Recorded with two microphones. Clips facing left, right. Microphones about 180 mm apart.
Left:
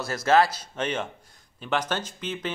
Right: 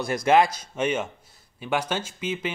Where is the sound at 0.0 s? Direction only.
15° right (ahead or behind).